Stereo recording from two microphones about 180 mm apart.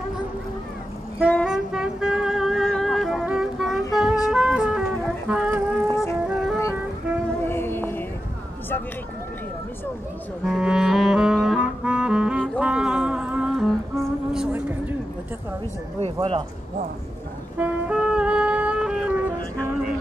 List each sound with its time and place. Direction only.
1.3 s music: centre (ahead or behind)
7.4 s music: 10° left (ahead or behind)
10.4 s music: 5° right (ahead or behind)
16.0 s a sound: 30° right (ahead or behind)
17.6 s music: 5° right (ahead or behind)